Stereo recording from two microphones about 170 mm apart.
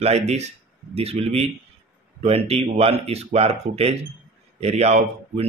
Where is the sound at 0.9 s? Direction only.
35° right (ahead or behind).